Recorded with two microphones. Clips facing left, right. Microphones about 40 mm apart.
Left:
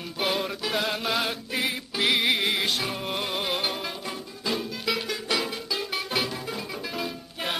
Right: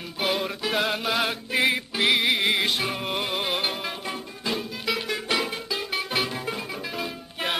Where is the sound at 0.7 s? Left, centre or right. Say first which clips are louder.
Right 4 dB; centre.